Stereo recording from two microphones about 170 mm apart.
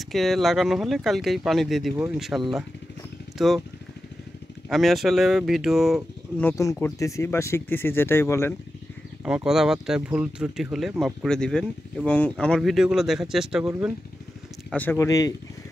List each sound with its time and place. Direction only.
0.0 s speech: centre (ahead or behind)
4.6 s speech: centre (ahead or behind)
6.4 s speech: 20° left (ahead or behind)
9.2 s speech: 5° right (ahead or behind)
14.7 s speech: 10° left (ahead or behind)